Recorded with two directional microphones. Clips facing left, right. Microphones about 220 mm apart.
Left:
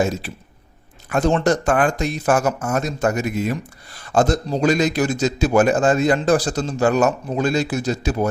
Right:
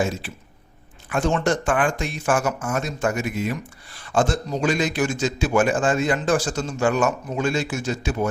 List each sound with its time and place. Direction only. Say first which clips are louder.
0.0 s speech: left 4 dB; 40° left (ahead or behind)